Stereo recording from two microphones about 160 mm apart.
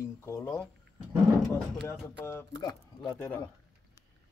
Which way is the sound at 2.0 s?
15° left (ahead or behind).